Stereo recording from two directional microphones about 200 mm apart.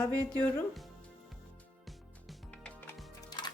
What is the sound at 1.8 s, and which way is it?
Music, centre (ahead or behind).